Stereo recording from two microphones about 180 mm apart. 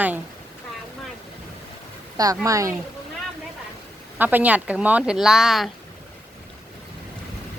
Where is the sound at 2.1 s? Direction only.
20° right (ahead or behind).